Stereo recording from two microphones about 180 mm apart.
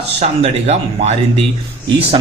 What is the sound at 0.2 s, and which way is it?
Speech, 35° right (ahead or behind).